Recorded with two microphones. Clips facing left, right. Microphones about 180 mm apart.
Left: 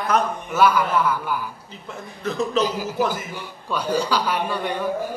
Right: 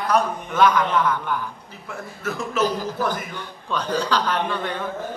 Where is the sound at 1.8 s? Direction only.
20° left (ahead or behind).